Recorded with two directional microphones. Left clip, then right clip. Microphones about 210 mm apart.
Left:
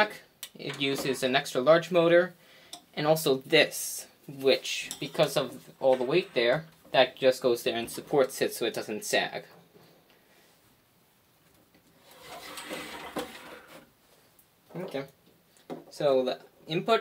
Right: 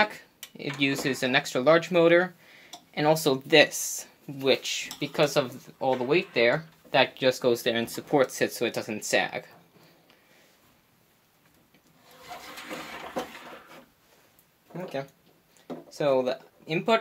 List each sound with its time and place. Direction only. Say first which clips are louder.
0.0 s speech: right 2 dB; 25° right (ahead or behind)
16.0 s speech: right 1 dB; 25° right (ahead or behind)